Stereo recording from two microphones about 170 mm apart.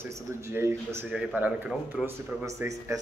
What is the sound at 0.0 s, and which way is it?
Speech, 15° right (ahead or behind).